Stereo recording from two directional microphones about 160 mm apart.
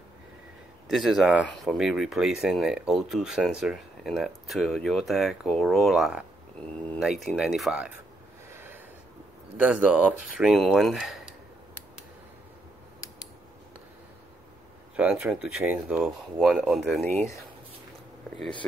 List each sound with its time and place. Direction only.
0.8 s speech: centre (ahead or behind)
8.5 s a sound: 15° right (ahead or behind)
9.6 s speech: 10° right (ahead or behind)
15.0 s speech: 10° right (ahead or behind)